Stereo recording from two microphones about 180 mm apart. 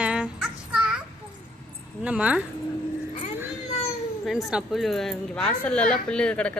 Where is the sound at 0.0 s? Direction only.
5° right (ahead or behind).